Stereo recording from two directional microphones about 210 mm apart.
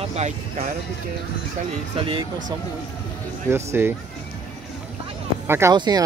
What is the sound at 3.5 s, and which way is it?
Speech, 10° right (ahead or behind).